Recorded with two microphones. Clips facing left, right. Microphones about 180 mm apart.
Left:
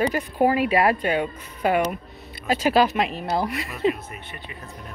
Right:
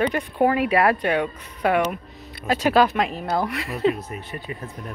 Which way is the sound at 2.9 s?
45° right (ahead or behind).